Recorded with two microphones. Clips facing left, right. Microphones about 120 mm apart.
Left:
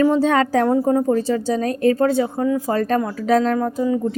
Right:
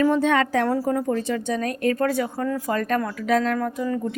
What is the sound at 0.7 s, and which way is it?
A woman's voice, 25° left (ahead or behind).